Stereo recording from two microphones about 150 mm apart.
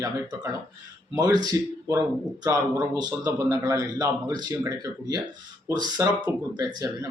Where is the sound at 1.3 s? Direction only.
20° right (ahead or behind).